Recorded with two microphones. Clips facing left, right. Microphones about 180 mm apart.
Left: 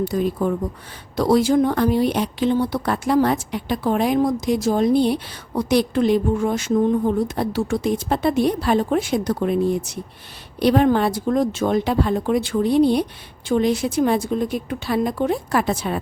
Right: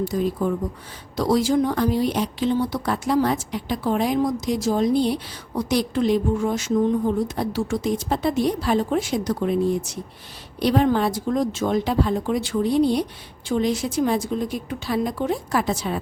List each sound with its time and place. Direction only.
0.1 s speech: 55° left (ahead or behind)